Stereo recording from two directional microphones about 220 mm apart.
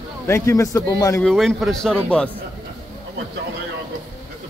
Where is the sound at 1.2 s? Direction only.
Centre (ahead or behind).